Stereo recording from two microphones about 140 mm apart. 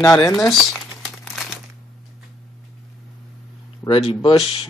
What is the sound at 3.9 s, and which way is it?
Speech, 35° left (ahead or behind).